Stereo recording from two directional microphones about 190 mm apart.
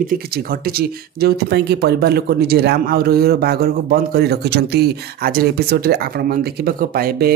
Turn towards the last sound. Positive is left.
turn(degrees=-50)  # may be behind; listen again after turning